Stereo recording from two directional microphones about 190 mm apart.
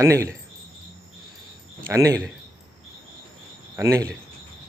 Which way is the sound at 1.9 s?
15° right (ahead or behind).